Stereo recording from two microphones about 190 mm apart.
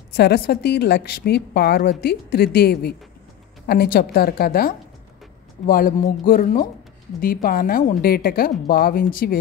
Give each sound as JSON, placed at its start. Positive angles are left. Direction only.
{"t": 0.1, "sound": "a woman's voice", "side_deg": 60}